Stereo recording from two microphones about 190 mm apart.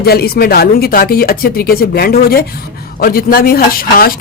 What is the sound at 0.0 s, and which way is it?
Speech, 55° left (ahead or behind).